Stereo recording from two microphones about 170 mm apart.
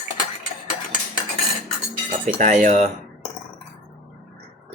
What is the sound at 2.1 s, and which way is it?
Speech, 50° right (ahead or behind).